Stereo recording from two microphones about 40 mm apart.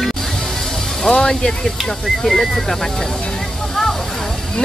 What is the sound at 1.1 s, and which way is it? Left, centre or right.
Speech, left.